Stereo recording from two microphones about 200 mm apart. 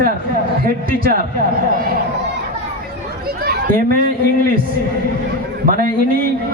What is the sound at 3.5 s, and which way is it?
Speech, 45° right (ahead or behind).